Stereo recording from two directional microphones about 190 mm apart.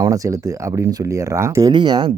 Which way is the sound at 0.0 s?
15° right (ahead or behind).